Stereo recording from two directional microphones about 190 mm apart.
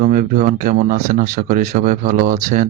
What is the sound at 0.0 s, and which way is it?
Speech, 45° right (ahead or behind).